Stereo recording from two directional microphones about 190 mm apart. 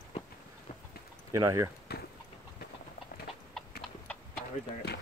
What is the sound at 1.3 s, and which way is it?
Speech, 15° right (ahead or behind).